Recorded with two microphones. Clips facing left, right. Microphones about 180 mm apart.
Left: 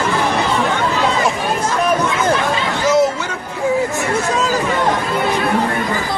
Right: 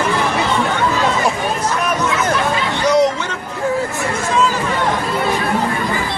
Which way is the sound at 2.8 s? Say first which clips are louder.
Even; 5° left (ahead or behind).